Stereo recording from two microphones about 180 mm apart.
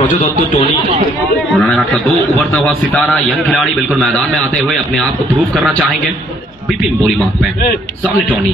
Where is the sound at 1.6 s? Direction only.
Centre (ahead or behind).